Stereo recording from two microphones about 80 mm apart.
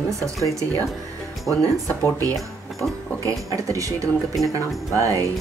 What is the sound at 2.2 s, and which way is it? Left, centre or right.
Speech, right.